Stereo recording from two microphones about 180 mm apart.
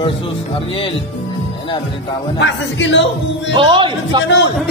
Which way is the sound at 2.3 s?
80° left.